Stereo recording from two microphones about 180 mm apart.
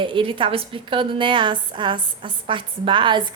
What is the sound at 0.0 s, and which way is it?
A woman's voice, 30° right (ahead or behind).